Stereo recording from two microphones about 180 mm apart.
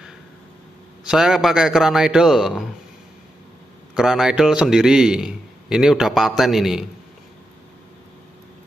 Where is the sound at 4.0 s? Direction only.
Centre (ahead or behind).